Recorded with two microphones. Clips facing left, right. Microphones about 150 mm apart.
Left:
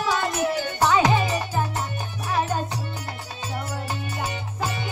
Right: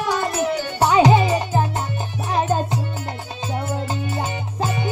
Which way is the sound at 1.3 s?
25° right (ahead or behind).